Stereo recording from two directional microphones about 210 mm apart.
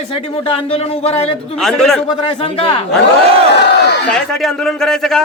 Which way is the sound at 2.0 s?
25° left (ahead or behind).